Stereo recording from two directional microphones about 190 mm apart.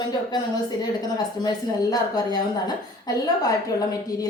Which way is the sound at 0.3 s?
20° left (ahead or behind).